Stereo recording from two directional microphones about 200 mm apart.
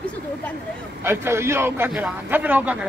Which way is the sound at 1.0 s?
10° right (ahead or behind).